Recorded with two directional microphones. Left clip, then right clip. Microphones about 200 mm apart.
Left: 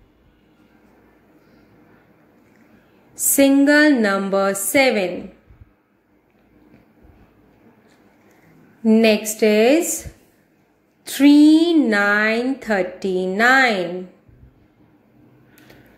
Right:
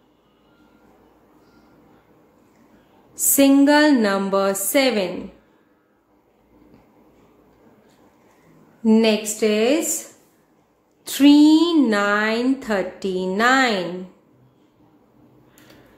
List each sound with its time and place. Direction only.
3.2 s a woman's voice: 10° left (ahead or behind)
9.4 s a woman's voice: 15° left (ahead or behind)
11.1 s a woman's voice: 5° left (ahead or behind)